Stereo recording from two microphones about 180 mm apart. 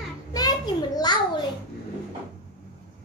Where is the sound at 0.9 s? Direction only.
25° left (ahead or behind).